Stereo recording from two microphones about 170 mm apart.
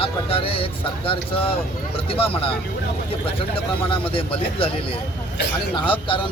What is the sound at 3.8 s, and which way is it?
Speech, 30° left (ahead or behind).